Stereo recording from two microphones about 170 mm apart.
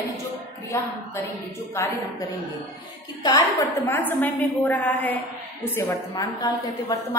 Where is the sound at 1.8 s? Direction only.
15° left (ahead or behind).